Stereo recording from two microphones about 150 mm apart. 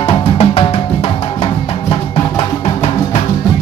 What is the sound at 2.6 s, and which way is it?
Music, 45° left (ahead or behind).